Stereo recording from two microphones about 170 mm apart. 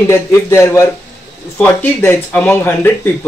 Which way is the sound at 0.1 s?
15° left (ahead or behind).